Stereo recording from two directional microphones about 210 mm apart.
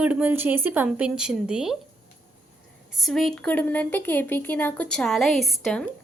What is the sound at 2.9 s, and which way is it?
A woman's voice, centre (ahead or behind).